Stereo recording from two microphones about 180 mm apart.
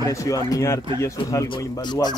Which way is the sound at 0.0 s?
20° left (ahead or behind).